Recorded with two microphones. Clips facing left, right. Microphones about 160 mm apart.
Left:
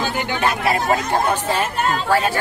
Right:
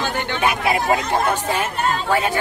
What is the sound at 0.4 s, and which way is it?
Speech, 15° right (ahead or behind).